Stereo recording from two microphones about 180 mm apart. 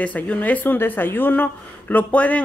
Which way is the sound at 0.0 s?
10° left (ahead or behind).